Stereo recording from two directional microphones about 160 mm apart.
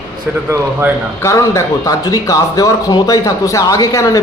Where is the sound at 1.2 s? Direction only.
20° left (ahead or behind).